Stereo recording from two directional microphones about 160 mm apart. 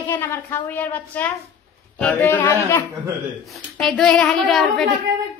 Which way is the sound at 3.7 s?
5° left (ahead or behind).